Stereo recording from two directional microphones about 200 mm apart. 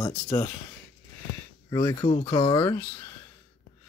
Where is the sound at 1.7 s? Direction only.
20° left (ahead or behind).